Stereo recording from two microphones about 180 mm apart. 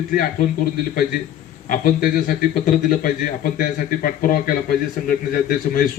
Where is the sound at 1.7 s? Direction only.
50° left (ahead or behind).